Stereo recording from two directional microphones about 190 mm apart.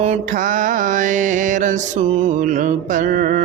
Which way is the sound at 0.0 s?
40° right (ahead or behind).